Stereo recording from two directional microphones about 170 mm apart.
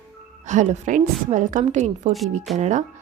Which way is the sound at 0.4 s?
45° right (ahead or behind).